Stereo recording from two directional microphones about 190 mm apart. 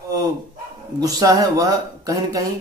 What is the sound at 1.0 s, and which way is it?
Speech, 20° right (ahead or behind).